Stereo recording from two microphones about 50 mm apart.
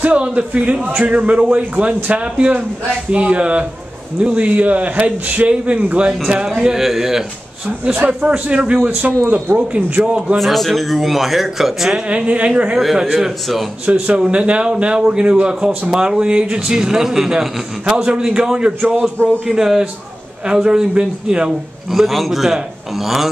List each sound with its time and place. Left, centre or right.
0.0 s a man's voice: right
6.8 s a man's voice: centre
7.8 s speech: right
8.1 s a man's voice: right
10.4 s a man's voice: centre
12.1 s a man's voice: right
12.7 s a man's voice: centre
13.8 s a man's voice: right
21.9 s a man's voice: centre